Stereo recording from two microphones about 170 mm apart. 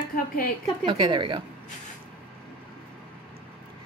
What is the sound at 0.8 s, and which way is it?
Speech, 30° right (ahead or behind).